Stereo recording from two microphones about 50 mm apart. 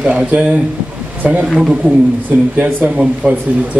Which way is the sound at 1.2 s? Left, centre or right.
Right.